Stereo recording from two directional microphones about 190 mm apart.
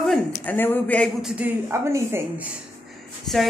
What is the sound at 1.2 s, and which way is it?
Speech, 5° right (ahead or behind).